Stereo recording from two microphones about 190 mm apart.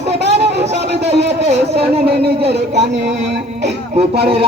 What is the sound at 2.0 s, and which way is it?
Speech, 55° right (ahead or behind).